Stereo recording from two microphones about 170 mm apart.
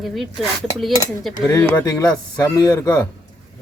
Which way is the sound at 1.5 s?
10° left (ahead or behind).